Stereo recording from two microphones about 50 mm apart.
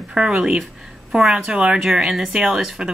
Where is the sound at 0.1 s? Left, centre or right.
Centre.